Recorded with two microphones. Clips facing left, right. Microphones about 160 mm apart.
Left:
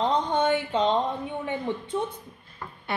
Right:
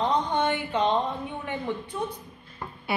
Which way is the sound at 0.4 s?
25° left (ahead or behind).